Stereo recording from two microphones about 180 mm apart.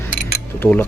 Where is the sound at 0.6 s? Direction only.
10° left (ahead or behind).